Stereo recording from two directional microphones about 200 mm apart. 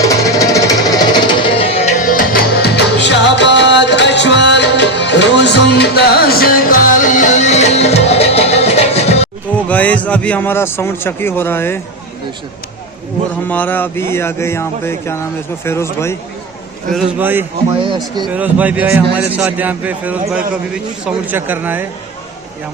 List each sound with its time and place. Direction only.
0.0 s music: 15° left (ahead or behind); by 9.3 s 30° left (ahead or behind)
9.6 s a man's voice: 5° left (ahead or behind)
13.5 s a sound: 10° left (ahead or behind)
16.9 s a man's voice: 5° right (ahead or behind)
17.7 s speech: 25° right (ahead or behind)
18.3 s a man's voice: 5° right (ahead or behind)